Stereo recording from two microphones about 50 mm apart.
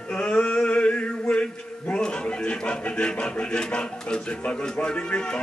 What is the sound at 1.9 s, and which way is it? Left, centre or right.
A man's voice, centre.